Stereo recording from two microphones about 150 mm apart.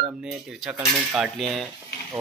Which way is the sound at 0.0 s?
5° right (ahead or behind).